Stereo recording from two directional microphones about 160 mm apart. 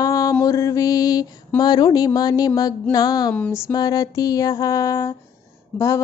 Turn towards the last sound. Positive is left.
turn(degrees=20)  # may be behind; listen again after turning